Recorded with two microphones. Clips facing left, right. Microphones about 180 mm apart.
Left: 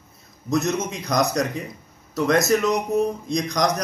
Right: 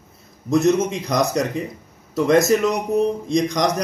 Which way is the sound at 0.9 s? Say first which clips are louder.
Right 2 dB; 30° right (ahead or behind).